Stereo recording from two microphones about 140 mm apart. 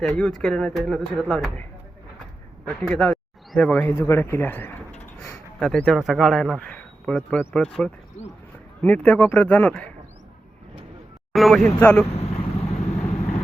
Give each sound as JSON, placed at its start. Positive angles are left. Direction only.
{"t": 0.0, "sound": "speech", "side_deg": 5}
{"t": 2.8, "sound": "speech", "side_deg": 10}
{"t": 3.8, "sound": "speech", "side_deg": 20}
{"t": 11.3, "sound": "speech", "side_deg": 0}
{"t": 11.8, "sound": "speech", "side_deg": 10}
{"t": 12.1, "sound": "vehicle", "side_deg": 45}